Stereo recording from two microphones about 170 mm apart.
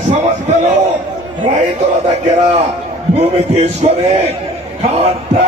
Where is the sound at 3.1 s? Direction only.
40° right (ahead or behind).